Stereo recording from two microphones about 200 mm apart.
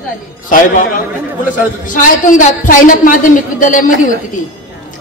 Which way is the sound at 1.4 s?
40° left (ahead or behind).